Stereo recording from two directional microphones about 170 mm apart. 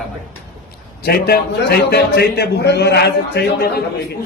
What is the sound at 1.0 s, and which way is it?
A man's voice, 65° left (ahead or behind).